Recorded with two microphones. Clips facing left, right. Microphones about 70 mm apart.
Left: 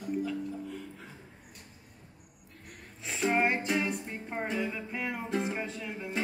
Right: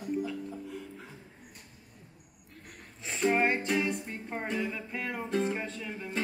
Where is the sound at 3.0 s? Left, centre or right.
Centre.